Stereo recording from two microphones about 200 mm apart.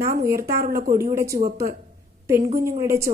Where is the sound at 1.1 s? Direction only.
15° right (ahead or behind).